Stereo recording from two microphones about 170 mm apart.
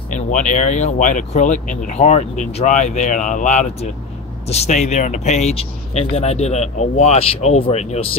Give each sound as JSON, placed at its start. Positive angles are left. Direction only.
{"t": 0.1, "sound": "speech", "side_deg": 45}